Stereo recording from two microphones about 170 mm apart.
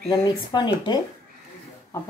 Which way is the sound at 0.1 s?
25° left (ahead or behind).